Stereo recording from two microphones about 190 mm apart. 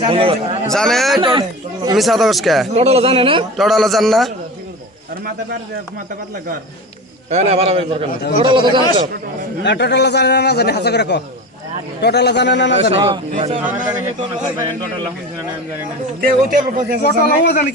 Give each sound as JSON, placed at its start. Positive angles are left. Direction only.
{"t": 0.1, "sound": "a man's voice", "side_deg": -30}
{"t": 0.7, "sound": "speech", "side_deg": 0}
{"t": 1.2, "sound": "speech", "side_deg": -25}
{"t": 2.0, "sound": "speech", "side_deg": 0}
{"t": 2.7, "sound": "speech", "side_deg": -35}
{"t": 3.6, "sound": "speech", "side_deg": 0}
{"t": 7.3, "sound": "a man's voice", "side_deg": -35}
{"t": 8.1, "sound": "speech", "side_deg": 50}
{"t": 8.4, "sound": "speech", "side_deg": -25}
{"t": 9.6, "sound": "a man's voice", "side_deg": 65}
{"t": 12.7, "sound": "a man's voice", "side_deg": -30}
{"t": 16.2, "sound": "speech", "side_deg": -45}
{"t": 17.0, "sound": "a man's voice", "side_deg": 60}